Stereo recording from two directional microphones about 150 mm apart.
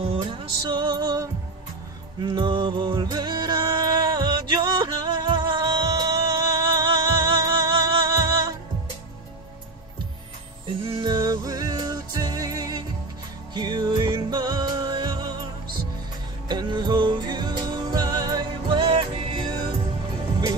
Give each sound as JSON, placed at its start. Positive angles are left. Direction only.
{"t": 0.2, "sound": "music", "side_deg": -35}
{"t": 10.8, "sound": "music", "side_deg": -35}
{"t": 16.4, "sound": "music", "side_deg": -30}